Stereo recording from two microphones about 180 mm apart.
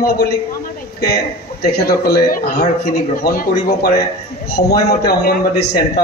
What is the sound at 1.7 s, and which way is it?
A man's voice, 60° left (ahead or behind).